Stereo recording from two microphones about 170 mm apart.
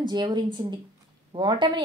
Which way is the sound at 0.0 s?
25° right (ahead or behind).